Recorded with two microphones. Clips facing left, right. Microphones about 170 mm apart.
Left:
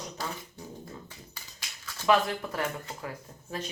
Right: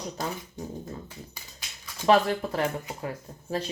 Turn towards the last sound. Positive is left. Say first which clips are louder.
# right 6 dB
turn(degrees=-35)  # may be behind; listen again after turning